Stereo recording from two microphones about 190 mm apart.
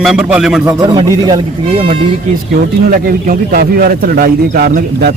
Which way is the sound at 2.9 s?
50° right (ahead or behind).